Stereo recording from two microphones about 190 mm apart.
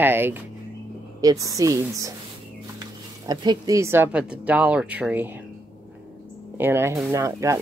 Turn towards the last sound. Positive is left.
turn(degrees=-15)  # may be behind; listen again after turning